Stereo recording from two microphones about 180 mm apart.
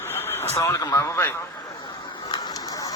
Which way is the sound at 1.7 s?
25° left (ahead or behind).